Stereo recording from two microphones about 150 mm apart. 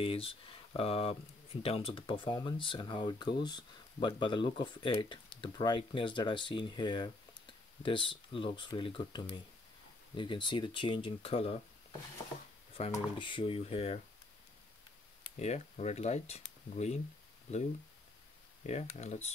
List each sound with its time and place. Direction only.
0.0 s speech: 40° left (ahead or behind)
12.8 s speech: 45° left (ahead or behind)
13.2 s speech: 35° left (ahead or behind)
15.3 s speech: 50° left (ahead or behind)
18.7 s speech: 50° left (ahead or behind)